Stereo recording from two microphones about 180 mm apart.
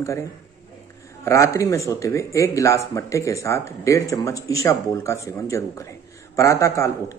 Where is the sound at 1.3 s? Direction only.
15° left (ahead or behind).